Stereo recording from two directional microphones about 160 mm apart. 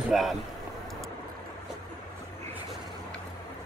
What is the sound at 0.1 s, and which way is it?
Speech, centre (ahead or behind).